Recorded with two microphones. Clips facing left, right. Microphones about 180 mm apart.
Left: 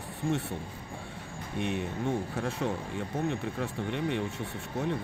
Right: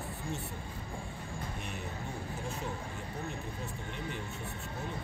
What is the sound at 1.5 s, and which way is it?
Speech, 75° left (ahead or behind).